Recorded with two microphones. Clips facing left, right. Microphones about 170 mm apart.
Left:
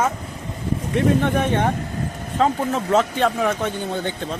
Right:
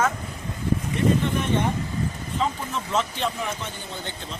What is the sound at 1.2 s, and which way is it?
Speech, 60° left (ahead or behind).